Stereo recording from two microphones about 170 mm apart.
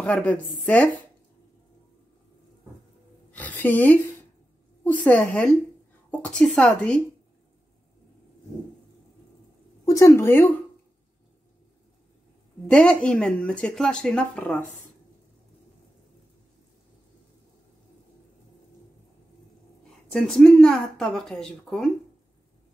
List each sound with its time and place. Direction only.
0.0 s speech: 5° left (ahead or behind)
3.3 s a woman's voice: 10° left (ahead or behind)
9.8 s speech: 15° left (ahead or behind)
12.6 s speech: 5° left (ahead or behind)
20.1 s speech: centre (ahead or behind)